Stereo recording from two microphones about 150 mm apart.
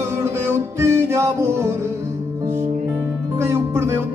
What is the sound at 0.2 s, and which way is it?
Music, 15° right (ahead or behind).